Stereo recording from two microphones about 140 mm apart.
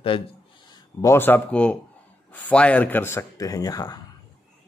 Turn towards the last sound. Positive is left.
turn(degrees=25)  # may be behind; listen again after turning